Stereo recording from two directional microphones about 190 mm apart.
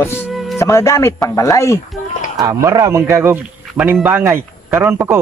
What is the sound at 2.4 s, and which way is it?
Speech, 15° right (ahead or behind).